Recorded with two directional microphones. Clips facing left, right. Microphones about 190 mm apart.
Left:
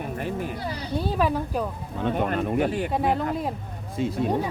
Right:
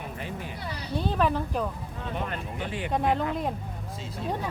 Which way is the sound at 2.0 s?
55° left (ahead or behind).